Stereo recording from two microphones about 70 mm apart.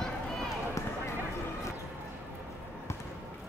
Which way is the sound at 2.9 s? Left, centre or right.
Left.